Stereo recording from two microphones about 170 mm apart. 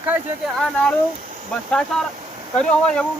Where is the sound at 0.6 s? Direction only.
Centre (ahead or behind).